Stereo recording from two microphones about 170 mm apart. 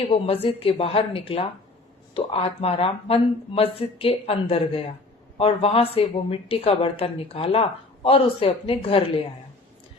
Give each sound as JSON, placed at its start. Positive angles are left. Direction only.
{"t": 0.1, "sound": "a woman's voice", "side_deg": 35}